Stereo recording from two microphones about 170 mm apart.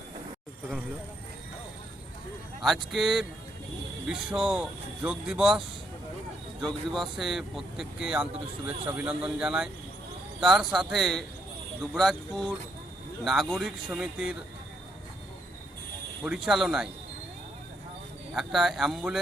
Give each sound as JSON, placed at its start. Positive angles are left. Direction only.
{"t": 2.6, "sound": "speech", "side_deg": 0}
{"t": 16.2, "sound": "speech", "side_deg": -5}
{"t": 18.3, "sound": "speech", "side_deg": 0}